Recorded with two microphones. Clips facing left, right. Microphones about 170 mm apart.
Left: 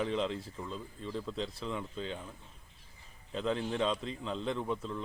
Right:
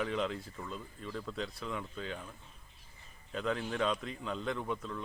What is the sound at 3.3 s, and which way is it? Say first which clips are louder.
Speech: left 2 dB; 25° left (ahead or behind).